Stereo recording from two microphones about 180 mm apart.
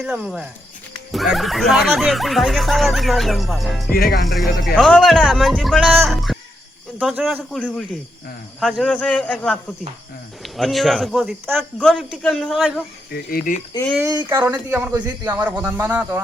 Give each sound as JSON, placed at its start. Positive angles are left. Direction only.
{"t": 0.0, "sound": "speech", "side_deg": -5}
{"t": 3.9, "sound": "music", "side_deg": 55}
{"t": 4.3, "sound": "a man's voice", "side_deg": 0}
{"t": 11.2, "sound": "speech", "side_deg": -10}
{"t": 11.5, "sound": "speech", "side_deg": 5}
{"t": 13.1, "sound": "speech", "side_deg": 50}
{"t": 14.0, "sound": "speech", "side_deg": -20}
{"t": 14.3, "sound": "speech", "side_deg": -10}